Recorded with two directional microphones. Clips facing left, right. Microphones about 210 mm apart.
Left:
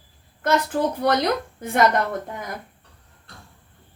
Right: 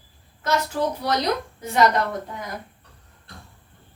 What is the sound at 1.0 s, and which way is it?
Speech, 55° left (ahead or behind).